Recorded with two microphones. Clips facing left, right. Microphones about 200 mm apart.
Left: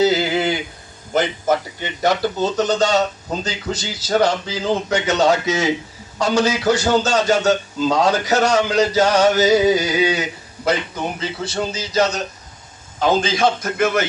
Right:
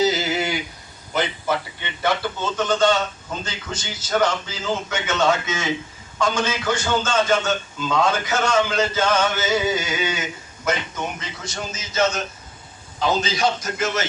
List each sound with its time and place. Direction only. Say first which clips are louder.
0.0 s a sound: left 4 dB; 60° left (ahead or behind)
1.1 s a man's voice: left 5 dB; 45° left (ahead or behind)
13.0 s a man's voice: left 4 dB; 50° left (ahead or behind)